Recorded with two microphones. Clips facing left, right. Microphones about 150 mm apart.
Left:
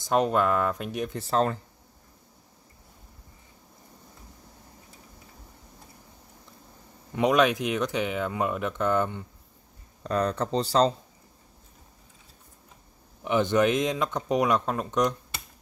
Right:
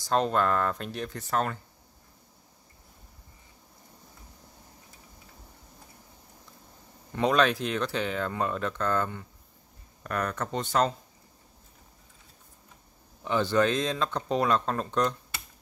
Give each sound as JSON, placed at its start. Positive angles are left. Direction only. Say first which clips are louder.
{"t": 0.0, "sound": "speech", "louder": "left 2 dB", "side_deg": 15}
{"t": 1.1, "sound": "speech", "louder": "left 4 dB", "side_deg": 30}
{"t": 7.1, "sound": "speech", "louder": "left 2 dB", "side_deg": 15}
{"t": 13.2, "sound": "speech", "louder": "left 2 dB", "side_deg": 15}